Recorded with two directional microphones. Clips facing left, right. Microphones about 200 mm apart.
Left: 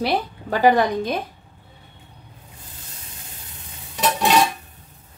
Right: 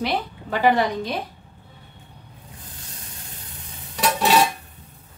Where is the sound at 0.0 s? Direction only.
40° left (ahead or behind).